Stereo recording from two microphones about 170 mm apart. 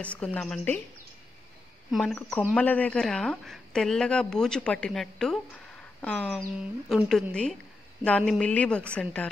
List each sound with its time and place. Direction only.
0.0 s speech: 10° left (ahead or behind)
1.9 s speech: centre (ahead or behind)